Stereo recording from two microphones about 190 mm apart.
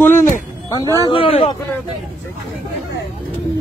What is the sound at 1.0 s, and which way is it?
Speech, 30° left (ahead or behind).